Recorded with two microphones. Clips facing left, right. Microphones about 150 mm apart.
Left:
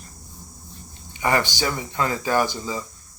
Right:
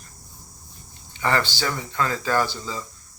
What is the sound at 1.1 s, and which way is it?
Speech, 15° left (ahead or behind).